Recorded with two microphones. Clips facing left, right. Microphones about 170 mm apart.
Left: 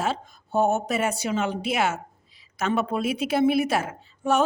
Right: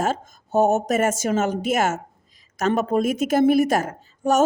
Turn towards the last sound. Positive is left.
turn(degrees=-40)  # may be behind; listen again after turning